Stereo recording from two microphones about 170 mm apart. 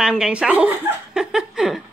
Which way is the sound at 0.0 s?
5° right (ahead or behind).